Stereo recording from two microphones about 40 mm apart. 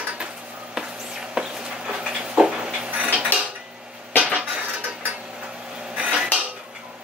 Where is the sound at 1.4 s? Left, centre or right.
Centre.